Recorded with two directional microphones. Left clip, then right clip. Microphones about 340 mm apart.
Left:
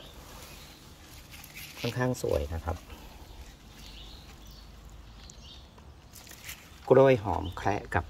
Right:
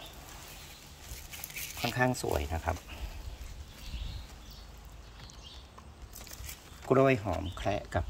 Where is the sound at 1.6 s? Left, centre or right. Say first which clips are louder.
Right 1 dB; centre.